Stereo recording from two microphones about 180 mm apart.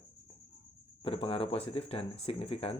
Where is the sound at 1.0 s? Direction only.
30° left (ahead or behind).